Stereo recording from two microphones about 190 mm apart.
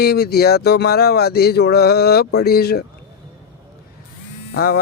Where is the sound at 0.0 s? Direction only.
55° left (ahead or behind).